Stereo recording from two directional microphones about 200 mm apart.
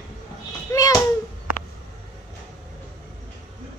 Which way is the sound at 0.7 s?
20° left (ahead or behind).